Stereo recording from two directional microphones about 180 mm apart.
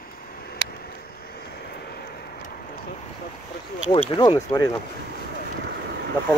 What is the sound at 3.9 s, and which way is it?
Speech, 25° left (ahead or behind).